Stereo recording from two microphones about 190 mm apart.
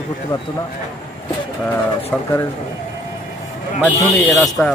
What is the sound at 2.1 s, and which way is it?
Speech, 5° left (ahead or behind).